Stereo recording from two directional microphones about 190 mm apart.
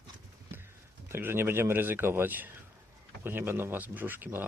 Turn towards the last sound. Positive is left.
turn(degrees=-10)  # may be behind; listen again after turning